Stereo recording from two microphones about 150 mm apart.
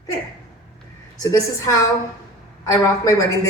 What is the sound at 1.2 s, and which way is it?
Speech, 25° left (ahead or behind).